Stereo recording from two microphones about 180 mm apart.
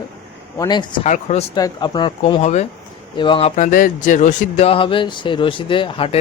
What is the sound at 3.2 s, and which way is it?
Speech, 30° left (ahead or behind).